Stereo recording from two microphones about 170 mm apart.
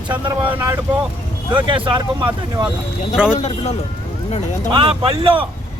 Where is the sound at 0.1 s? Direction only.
30° right (ahead or behind).